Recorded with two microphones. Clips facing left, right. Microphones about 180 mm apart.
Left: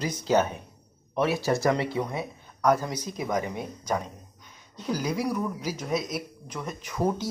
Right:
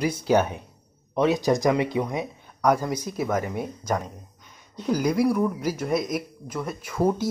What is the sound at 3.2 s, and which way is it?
Speech, 15° left (ahead or behind).